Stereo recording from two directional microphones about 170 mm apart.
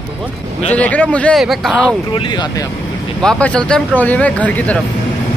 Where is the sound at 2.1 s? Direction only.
30° left (ahead or behind).